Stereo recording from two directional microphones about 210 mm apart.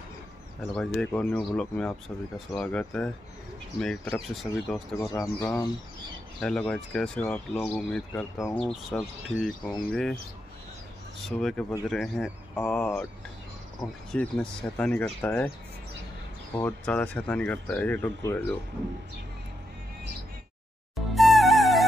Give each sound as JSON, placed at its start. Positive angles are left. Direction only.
{"t": 0.6, "sound": "speech", "side_deg": 5}
{"t": 5.1, "sound": "speech", "side_deg": 15}
{"t": 6.4, "sound": "speech", "side_deg": 5}
{"t": 11.2, "sound": "speech", "side_deg": 0}
{"t": 14.1, "sound": "speech", "side_deg": 5}
{"t": 16.5, "sound": "speech", "side_deg": 5}
{"t": 21.1, "sound": "music", "side_deg": 0}